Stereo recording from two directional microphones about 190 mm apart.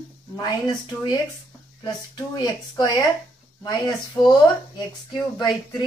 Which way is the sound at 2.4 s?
20° left (ahead or behind).